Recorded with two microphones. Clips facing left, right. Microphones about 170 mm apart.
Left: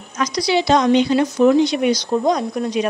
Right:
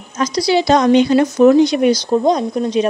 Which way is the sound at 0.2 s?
30° right (ahead or behind).